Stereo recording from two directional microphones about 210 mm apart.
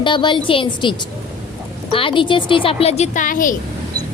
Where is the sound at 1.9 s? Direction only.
25° left (ahead or behind); by 3.6 s 40° left (ahead or behind).